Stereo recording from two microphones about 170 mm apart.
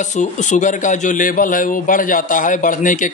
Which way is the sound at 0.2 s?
45° left (ahead or behind).